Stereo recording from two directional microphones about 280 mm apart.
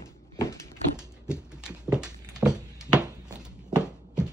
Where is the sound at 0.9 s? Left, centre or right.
Centre.